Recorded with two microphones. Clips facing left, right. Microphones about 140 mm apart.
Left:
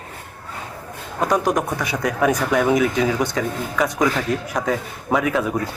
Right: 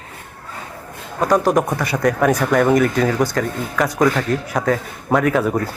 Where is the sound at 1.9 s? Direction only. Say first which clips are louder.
Right 3 dB; centre (ahead or behind).